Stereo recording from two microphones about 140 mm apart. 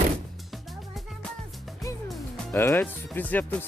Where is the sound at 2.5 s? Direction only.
15° left (ahead or behind).